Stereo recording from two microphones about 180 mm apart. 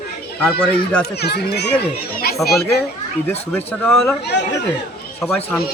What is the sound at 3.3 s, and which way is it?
Speech, 10° left (ahead or behind).